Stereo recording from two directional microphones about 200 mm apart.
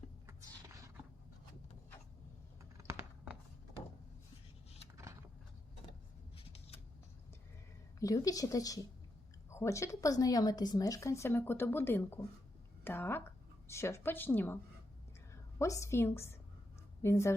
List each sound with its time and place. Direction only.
0.3 s a sound: 15° right (ahead or behind)
2.8 s computer keyboard: 10° right (ahead or behind)
6.3 s scissors: 30° left (ahead or behind)
7.9 s a woman's voice: 15° left (ahead or behind)